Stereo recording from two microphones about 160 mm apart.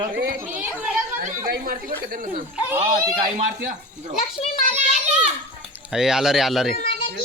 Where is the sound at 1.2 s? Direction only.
55° right (ahead or behind).